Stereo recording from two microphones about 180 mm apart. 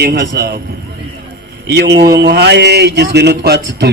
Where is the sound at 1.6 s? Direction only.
70° right (ahead or behind).